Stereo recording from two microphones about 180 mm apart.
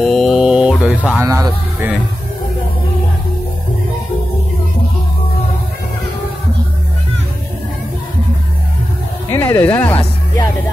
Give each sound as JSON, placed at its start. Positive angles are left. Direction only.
{"t": 0.0, "sound": "mantra", "side_deg": 0}
{"t": 1.2, "sound": "speech", "side_deg": -15}
{"t": 9.3, "sound": "speech", "side_deg": 10}